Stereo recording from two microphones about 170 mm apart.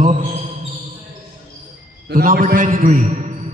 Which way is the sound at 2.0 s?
55° right (ahead or behind).